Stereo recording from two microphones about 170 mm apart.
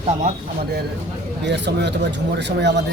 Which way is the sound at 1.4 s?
90° right.